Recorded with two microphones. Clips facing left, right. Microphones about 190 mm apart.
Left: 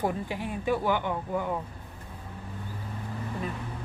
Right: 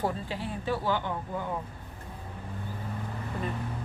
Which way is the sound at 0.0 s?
15° left (ahead or behind).